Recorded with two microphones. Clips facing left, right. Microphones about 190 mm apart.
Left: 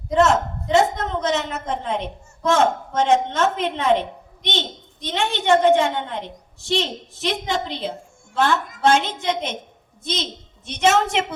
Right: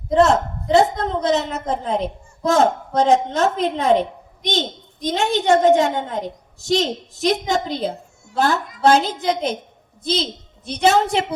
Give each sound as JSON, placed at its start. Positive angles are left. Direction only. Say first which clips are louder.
{"t": 0.1, "sound": "a woman's voice", "louder": "right 2 dB", "side_deg": -35}
{"t": 5.0, "sound": "a woman's voice", "louder": "right 3 dB", "side_deg": -40}